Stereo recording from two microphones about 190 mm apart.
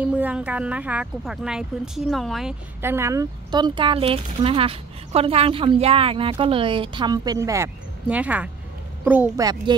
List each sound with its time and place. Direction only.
0.0 s speech: 5° right (ahead or behind)
2.8 s a woman's voice: 15° right (ahead or behind)
9.4 s speech: 20° right (ahead or behind)